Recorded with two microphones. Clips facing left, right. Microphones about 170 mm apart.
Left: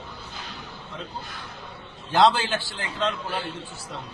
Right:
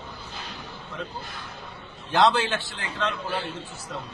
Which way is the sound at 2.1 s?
30° left (ahead or behind).